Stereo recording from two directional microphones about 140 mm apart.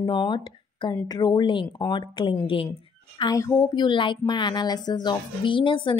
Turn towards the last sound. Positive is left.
turn(degrees=35)  # may be behind; listen again after turning